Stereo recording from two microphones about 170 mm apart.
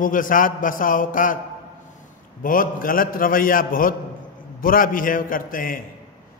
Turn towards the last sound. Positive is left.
turn(degrees=55)  # may be behind; listen again after turning